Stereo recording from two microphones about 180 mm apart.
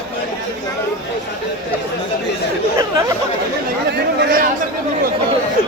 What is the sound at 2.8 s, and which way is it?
Chatter, 15° right (ahead or behind).